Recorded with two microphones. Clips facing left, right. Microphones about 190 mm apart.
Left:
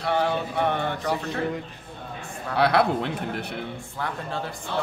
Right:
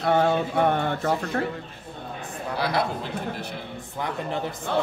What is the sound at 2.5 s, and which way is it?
Speech, 65° left (ahead or behind).